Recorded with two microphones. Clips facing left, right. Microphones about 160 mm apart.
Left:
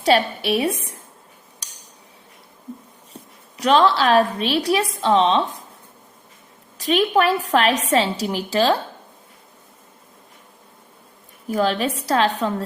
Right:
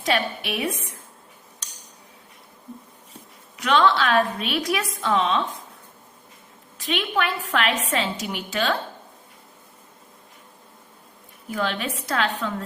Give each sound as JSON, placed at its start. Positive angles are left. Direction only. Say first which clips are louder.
{"t": 0.0, "sound": "a woman's voice", "louder": "left 6 dB", "side_deg": 30}
{"t": 3.6, "sound": "a woman's voice", "louder": "left 3 dB", "side_deg": 35}
{"t": 6.7, "sound": "a woman's voice", "louder": "left 7 dB", "side_deg": 40}
{"t": 11.4, "sound": "a woman's voice", "louder": "left 6 dB", "side_deg": 35}